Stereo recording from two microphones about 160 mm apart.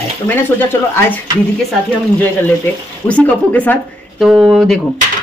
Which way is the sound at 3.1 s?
10° left (ahead or behind).